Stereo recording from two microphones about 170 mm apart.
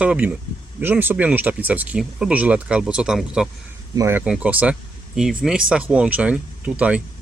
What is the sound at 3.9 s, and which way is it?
Speech, 15° right (ahead or behind).